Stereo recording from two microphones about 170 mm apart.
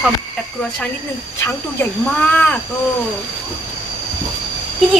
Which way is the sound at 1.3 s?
15° left (ahead or behind).